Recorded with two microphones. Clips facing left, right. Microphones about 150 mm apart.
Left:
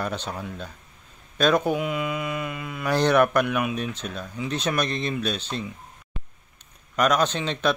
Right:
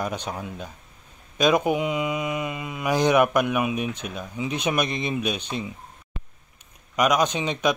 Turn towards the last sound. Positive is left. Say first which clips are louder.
# right 1 dB
turn(degrees=-10)  # may be behind; listen again after turning